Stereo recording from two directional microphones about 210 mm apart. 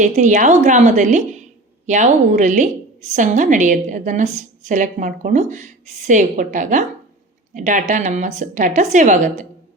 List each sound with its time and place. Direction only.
0.0 s a woman's voice: 35° right (ahead or behind)